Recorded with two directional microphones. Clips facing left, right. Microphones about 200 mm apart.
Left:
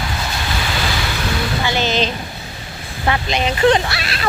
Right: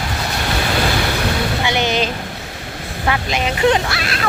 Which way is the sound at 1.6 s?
15° right (ahead or behind).